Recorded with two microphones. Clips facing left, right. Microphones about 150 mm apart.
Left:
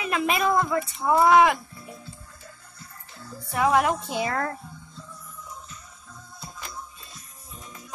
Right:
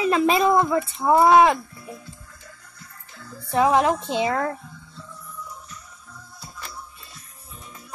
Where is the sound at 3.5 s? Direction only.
25° right (ahead or behind).